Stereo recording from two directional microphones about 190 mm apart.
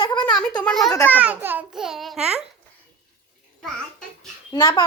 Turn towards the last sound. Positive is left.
turn(degrees=25)  # may be behind; listen again after turning